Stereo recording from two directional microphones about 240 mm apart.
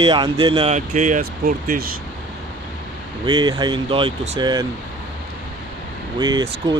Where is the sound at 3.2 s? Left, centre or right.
Centre.